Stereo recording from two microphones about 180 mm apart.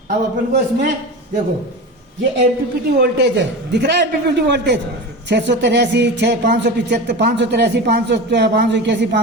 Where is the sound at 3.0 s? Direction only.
70° right (ahead or behind).